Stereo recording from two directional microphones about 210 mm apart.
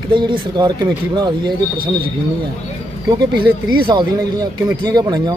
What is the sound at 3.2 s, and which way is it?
A man's voice, 20° right (ahead or behind).